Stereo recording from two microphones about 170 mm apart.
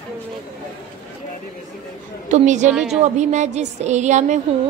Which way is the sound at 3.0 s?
45° right (ahead or behind).